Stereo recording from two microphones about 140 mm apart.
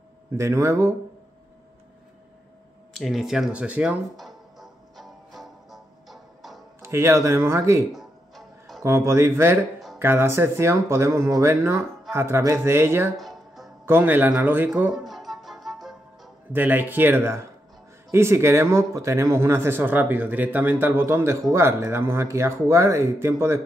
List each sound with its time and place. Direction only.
0.4 s speech: 20° right (ahead or behind)
2.9 s music: centre (ahead or behind)
6.8 s speech: 20° right (ahead or behind)
7.9 s music: centre (ahead or behind)
8.8 s a man's voice: 20° right (ahead or behind)
13.2 s music: centre (ahead or behind)
13.8 s a man's voice: 15° right (ahead or behind)
14.8 s music: 5° right (ahead or behind)
16.5 s a man's voice: 15° right (ahead or behind)